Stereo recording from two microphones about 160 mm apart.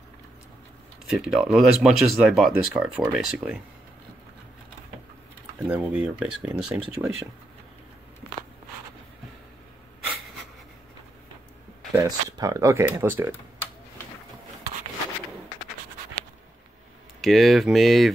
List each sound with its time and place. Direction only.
1.0 s speech: 5° right (ahead or behind)
5.7 s speech: 10° right (ahead or behind)
11.9 s speech: 20° right (ahead or behind)
17.2 s speech: centre (ahead or behind)